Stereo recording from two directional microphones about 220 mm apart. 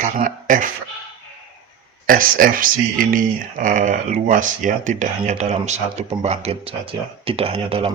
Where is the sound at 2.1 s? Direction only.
40° right (ahead or behind).